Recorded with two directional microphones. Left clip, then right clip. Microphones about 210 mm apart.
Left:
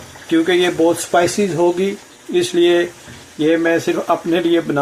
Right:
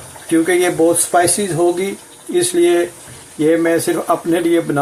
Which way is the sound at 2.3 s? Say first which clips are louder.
Even; centre (ahead or behind).